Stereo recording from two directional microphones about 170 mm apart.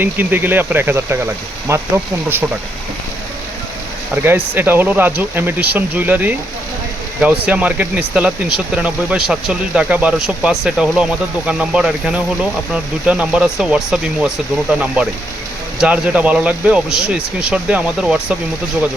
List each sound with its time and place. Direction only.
0.0 s speech: 10° right (ahead or behind)
4.1 s speech: 10° right (ahead or behind)